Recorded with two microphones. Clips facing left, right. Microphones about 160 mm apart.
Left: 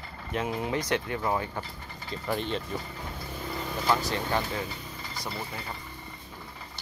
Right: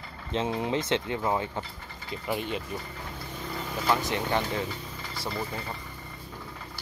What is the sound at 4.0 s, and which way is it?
Speech, 20° right (ahead or behind).